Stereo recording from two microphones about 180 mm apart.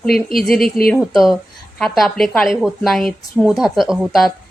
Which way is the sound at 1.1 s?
Centre (ahead or behind).